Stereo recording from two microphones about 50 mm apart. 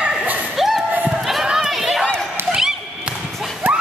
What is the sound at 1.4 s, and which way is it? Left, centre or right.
Chatter, centre.